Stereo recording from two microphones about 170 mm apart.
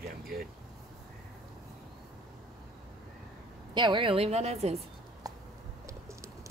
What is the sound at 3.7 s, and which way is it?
A woman's voice, 30° right (ahead or behind).